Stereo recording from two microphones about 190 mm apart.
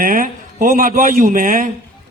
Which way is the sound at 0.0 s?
45° right (ahead or behind).